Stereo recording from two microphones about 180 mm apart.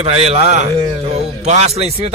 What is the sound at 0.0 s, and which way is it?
Speech, 35° right (ahead or behind).